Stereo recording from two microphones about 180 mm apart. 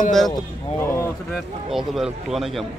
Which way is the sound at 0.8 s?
15° left (ahead or behind).